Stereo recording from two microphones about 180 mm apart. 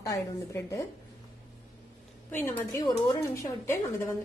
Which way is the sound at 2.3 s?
10° left (ahead or behind).